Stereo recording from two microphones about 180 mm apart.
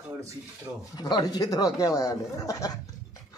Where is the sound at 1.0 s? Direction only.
20° left (ahead or behind).